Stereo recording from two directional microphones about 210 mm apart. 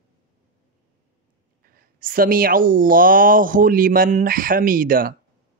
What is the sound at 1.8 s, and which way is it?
Speech, 40° right (ahead or behind).